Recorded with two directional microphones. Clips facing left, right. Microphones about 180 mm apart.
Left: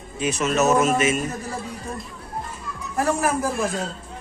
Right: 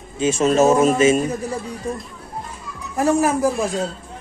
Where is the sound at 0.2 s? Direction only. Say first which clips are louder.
Right 6 dB; 30° right (ahead or behind).